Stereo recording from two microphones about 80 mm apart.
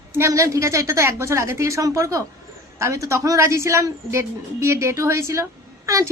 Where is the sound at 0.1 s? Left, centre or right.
Right.